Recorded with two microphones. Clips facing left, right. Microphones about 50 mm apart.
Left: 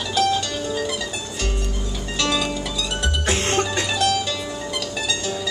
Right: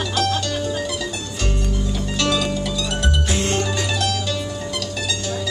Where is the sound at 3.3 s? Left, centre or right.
Left.